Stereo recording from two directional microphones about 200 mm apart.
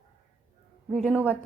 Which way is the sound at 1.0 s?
5° right (ahead or behind).